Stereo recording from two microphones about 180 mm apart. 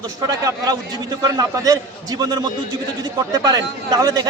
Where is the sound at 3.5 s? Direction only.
20° right (ahead or behind).